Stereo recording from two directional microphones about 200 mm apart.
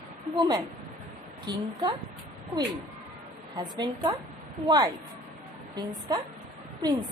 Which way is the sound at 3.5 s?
20° right (ahead or behind).